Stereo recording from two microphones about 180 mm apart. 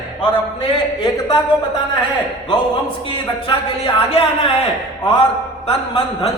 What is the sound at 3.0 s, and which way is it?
A man's voice, 30° left (ahead or behind).